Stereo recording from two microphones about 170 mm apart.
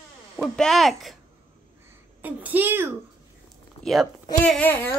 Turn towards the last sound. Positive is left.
turn(degrees=10)  # may be behind; listen again after turning